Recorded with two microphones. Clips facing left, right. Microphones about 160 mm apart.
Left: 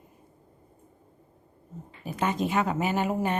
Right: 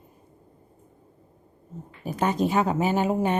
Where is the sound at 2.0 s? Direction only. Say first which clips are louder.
Right 4 dB; 40° right (ahead or behind).